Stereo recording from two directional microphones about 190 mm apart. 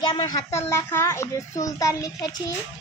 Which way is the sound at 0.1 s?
20° left (ahead or behind).